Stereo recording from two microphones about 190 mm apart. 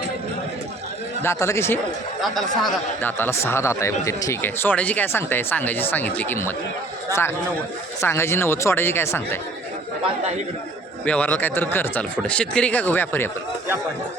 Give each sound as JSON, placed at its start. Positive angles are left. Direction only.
{"t": 1.2, "sound": "speech", "side_deg": 15}
{"t": 2.2, "sound": "speech", "side_deg": 0}
{"t": 11.0, "sound": "speech", "side_deg": 5}